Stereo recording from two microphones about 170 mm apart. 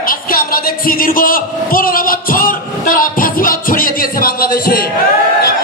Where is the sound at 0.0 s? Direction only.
60° left (ahead or behind).